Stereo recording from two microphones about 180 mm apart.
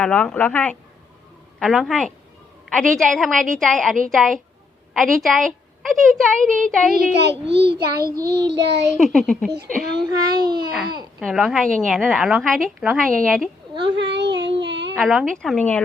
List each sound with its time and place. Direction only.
0.0 s a woman's voice: 5° left (ahead or behind)
7.2 s a child's voice: 70° right (ahead or behind)
8.9 s a woman's voice: centre (ahead or behind)
10.1 s a child's voice: 20° right (ahead or behind)
11.2 s a woman's voice: centre (ahead or behind)
13.9 s a sound: 75° right (ahead or behind)
14.9 s a woman's voice: centre (ahead or behind)